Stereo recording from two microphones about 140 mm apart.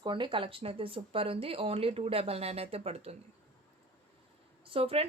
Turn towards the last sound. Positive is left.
turn(degrees=-45)  # may be behind; listen again after turning